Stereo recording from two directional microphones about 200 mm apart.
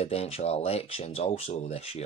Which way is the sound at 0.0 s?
30° left (ahead or behind).